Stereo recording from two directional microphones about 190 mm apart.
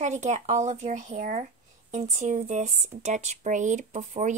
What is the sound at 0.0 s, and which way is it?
Speech, 40° right (ahead or behind).